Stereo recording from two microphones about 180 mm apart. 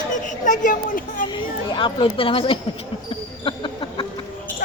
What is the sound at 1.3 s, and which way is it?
A woman's voice, 25° left (ahead or behind).